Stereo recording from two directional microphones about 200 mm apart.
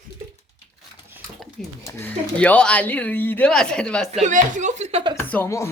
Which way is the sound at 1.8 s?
10° left (ahead or behind).